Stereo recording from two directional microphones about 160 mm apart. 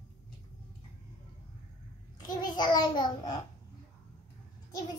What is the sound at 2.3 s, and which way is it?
A child's voice, 25° left (ahead or behind).